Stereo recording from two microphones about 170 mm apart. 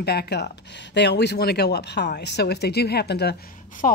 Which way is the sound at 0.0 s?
70° left (ahead or behind).